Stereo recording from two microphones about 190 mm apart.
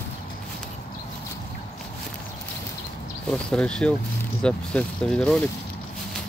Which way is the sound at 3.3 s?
5° left (ahead or behind).